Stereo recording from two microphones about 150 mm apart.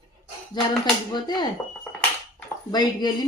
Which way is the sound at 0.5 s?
30° left (ahead or behind).